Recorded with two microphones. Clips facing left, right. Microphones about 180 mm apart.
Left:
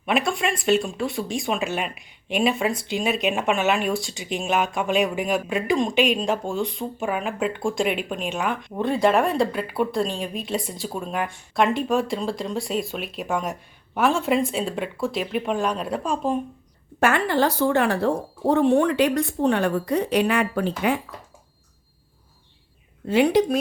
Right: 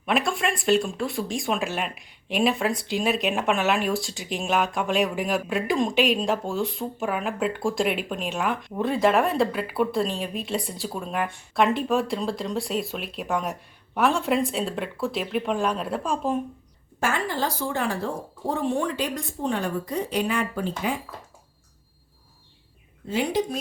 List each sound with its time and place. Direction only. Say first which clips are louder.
0.0 s speech: left 1 dB; centre (ahead or behind)
17.0 s a woman's voice: left 6 dB; 65° left (ahead or behind)
23.0 s a woman's voice: left 7 dB; 70° left (ahead or behind)